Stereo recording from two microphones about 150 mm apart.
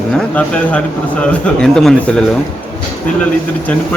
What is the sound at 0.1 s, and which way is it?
Speech, 5° left (ahead or behind).